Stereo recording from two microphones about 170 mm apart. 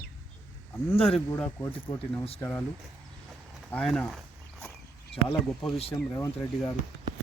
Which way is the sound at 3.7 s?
Centre (ahead or behind).